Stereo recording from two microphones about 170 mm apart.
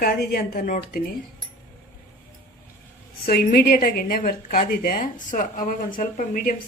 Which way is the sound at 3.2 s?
65° left (ahead or behind).